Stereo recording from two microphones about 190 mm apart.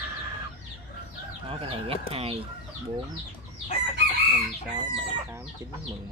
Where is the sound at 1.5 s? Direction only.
30° right (ahead or behind).